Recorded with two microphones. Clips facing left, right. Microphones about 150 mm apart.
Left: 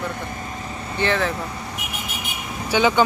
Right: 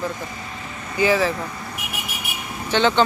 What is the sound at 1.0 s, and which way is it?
Speech, 5° right (ahead or behind).